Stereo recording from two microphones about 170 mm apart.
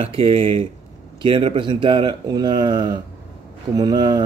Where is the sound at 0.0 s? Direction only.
35° right (ahead or behind).